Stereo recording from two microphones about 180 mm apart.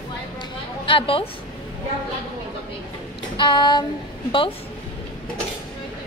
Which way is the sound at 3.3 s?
25° left (ahead or behind).